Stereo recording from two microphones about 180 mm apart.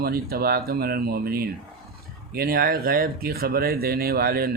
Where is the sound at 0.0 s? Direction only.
60° right (ahead or behind).